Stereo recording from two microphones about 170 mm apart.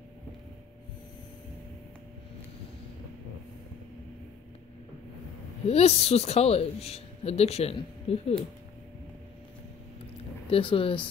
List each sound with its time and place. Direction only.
5.7 s a woman's voice: 35° left (ahead or behind)
10.5 s a woman's voice: 30° left (ahead or behind)